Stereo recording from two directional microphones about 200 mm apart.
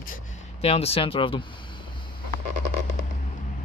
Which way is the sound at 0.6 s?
30° left (ahead or behind).